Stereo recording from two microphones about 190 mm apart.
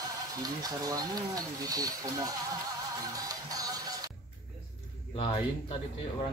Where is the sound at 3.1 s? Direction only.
20° right (ahead or behind).